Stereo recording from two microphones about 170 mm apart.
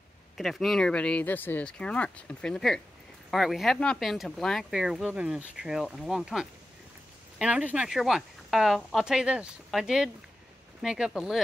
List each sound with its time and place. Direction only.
0.4 s speech: centre (ahead or behind)